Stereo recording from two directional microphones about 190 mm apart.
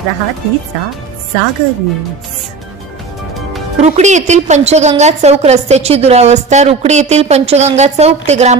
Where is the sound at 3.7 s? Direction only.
35° right (ahead or behind).